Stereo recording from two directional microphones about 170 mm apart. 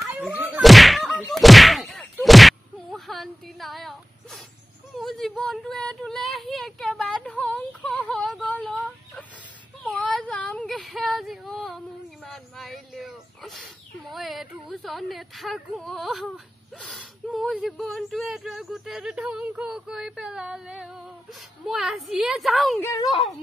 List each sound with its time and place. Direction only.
0.0 s a sound: 10° right (ahead or behind)
14.1 s speech: centre (ahead or behind)
22.8 s speech: 15° left (ahead or behind)